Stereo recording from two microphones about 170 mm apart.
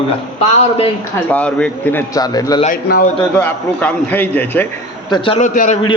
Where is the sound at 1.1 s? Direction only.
10° left (ahead or behind).